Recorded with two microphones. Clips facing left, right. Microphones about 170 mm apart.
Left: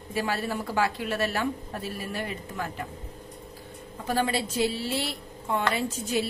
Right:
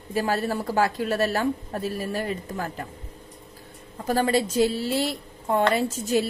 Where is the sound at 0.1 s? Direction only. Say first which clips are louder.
Right 4 dB; 40° right (ahead or behind).